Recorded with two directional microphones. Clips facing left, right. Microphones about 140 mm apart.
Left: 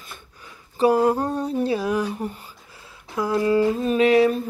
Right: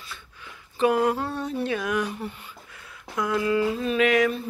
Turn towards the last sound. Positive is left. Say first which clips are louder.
# left 4 dB
turn(degrees=35)  # may be behind; listen again after turning